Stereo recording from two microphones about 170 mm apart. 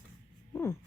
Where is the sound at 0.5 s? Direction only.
15° left (ahead or behind).